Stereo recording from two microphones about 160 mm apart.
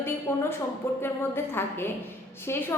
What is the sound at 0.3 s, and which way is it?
A woman's voice, 15° left (ahead or behind).